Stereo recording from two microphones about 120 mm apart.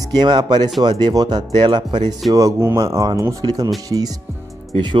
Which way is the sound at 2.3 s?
25° right (ahead or behind).